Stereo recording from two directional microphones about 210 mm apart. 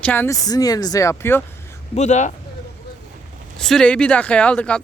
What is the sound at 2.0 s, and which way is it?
Speech, 35° left (ahead or behind).